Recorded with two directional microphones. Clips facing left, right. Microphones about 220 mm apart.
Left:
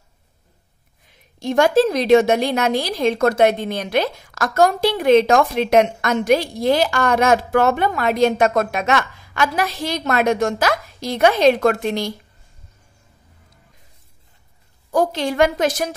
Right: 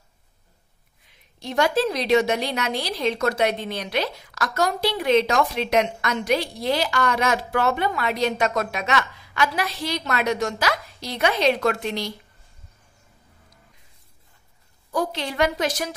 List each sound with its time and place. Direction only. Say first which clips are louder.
1.4 s a woman's voice: left 6 dB; 45° left (ahead or behind)
14.9 s a woman's voice: left 7 dB; 45° left (ahead or behind)